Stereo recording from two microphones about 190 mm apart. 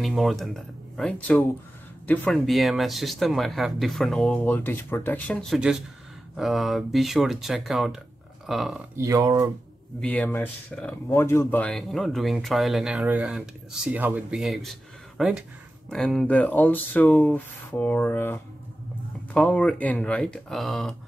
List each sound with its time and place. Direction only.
0.0 s speech: centre (ahead or behind)
8.9 s speech: 15° right (ahead or behind)
9.9 s speech: 5° left (ahead or behind)